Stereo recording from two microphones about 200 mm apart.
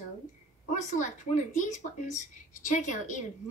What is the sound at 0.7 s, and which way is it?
A woman's voice, 40° left (ahead or behind).